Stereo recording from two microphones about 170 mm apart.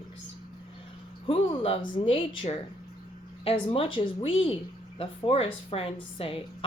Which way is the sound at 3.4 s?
35° left (ahead or behind).